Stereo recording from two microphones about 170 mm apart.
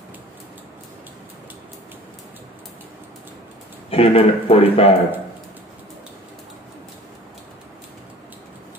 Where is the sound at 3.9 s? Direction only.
35° left (ahead or behind).